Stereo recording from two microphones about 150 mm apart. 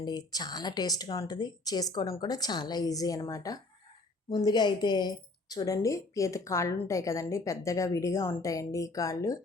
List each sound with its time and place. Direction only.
0.0 s speech: 25° left (ahead or behind)